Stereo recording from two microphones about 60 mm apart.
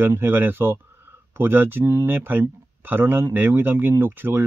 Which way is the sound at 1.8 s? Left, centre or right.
Right.